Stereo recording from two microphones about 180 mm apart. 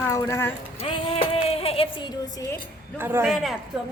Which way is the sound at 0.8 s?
35° left (ahead or behind).